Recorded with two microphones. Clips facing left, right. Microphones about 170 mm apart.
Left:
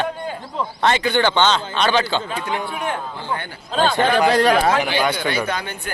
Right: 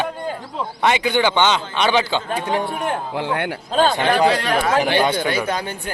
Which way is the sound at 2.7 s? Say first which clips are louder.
Right 2 dB; 45° right (ahead or behind).